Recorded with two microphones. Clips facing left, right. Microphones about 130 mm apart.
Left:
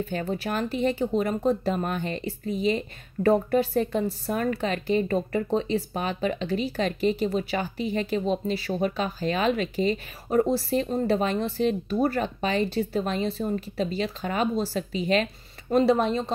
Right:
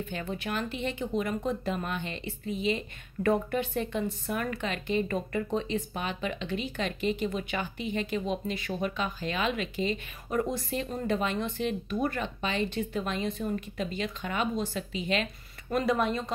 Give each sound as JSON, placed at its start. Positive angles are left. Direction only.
{"t": 0.0, "sound": "speech", "side_deg": 40}